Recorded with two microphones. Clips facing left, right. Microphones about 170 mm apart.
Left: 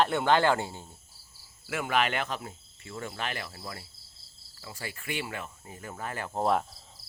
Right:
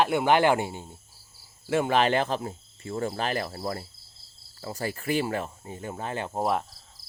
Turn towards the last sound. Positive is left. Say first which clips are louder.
# even
turn(degrees=-5)  # may be behind; listen again after turning